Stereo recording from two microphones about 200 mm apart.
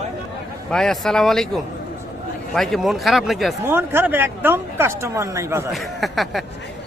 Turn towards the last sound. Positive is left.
turn(degrees=0)  # may be behind; listen again after turning